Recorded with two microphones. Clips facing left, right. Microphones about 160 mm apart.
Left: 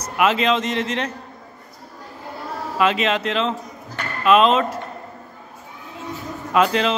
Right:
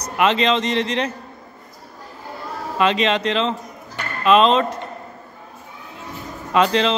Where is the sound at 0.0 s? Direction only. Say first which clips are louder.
Right 1 dB; 5° left (ahead or behind).